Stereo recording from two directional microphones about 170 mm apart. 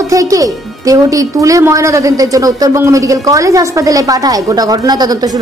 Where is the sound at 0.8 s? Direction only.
20° right (ahead or behind).